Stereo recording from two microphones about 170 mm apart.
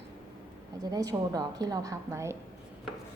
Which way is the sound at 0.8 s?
20° right (ahead or behind).